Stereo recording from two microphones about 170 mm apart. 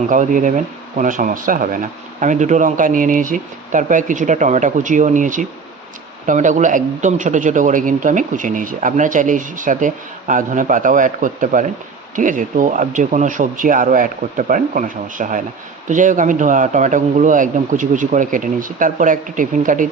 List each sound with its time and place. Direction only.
0.1 s a man's voice: 50° right (ahead or behind)